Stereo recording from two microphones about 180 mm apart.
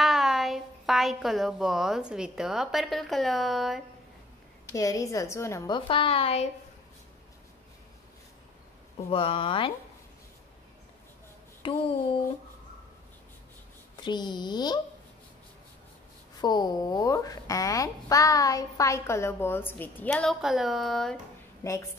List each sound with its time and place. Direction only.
0.0 s a woman's voice: centre (ahead or behind)
4.7 s speech: 20° left (ahead or behind)
5.8 s a woman's voice: 30° left (ahead or behind)
9.1 s a woman's voice: 30° left (ahead or behind)
11.6 s a woman's voice: 30° left (ahead or behind)
14.0 s a woman's voice: 25° left (ahead or behind)
16.3 s speech: 20° left (ahead or behind); by 21.2 s centre (ahead or behind)
21.6 s speech: 15° left (ahead or behind)